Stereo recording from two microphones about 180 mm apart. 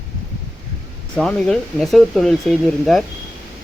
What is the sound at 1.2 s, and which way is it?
Speech, 5° left (ahead or behind).